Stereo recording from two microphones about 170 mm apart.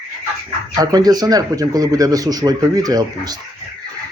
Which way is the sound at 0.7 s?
20° right (ahead or behind).